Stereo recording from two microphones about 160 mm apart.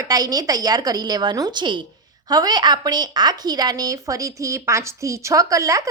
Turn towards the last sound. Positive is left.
turn(degrees=-20)  # may be behind; listen again after turning